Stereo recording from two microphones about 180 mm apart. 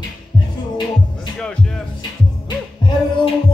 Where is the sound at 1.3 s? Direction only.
5° left (ahead or behind).